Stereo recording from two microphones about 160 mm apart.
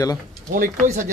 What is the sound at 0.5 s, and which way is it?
Speech, 55° right (ahead or behind).